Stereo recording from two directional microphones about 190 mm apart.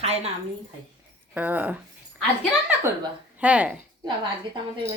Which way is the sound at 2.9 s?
15° right (ahead or behind).